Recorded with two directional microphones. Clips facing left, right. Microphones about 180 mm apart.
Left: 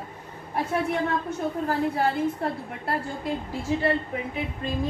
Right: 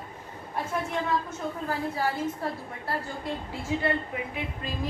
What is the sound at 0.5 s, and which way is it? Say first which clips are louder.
A woman's voice: left 5 dB; 65° left (ahead or behind).